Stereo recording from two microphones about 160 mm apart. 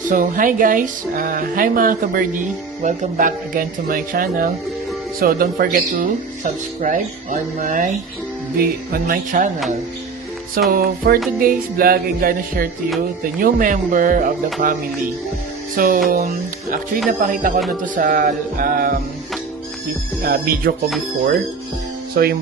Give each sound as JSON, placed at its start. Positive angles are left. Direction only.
{"t": 0.0, "sound": "speech", "side_deg": -55}
{"t": 8.5, "sound": "speech", "side_deg": -65}
{"t": 10.7, "sound": "speech", "side_deg": -70}
{"t": 17.2, "sound": "speech", "side_deg": -60}
{"t": 20.2, "sound": "speech", "side_deg": -70}
{"t": 22.2, "sound": "speech", "side_deg": -70}